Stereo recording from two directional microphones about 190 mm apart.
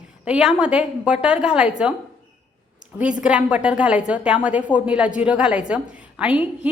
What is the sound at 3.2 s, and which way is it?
A woman's voice, 5° right (ahead or behind).